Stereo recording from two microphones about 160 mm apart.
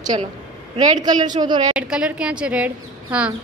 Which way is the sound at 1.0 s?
25° right (ahead or behind).